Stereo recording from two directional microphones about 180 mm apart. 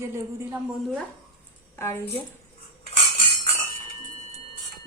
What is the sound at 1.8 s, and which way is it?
Speech, 15° left (ahead or behind).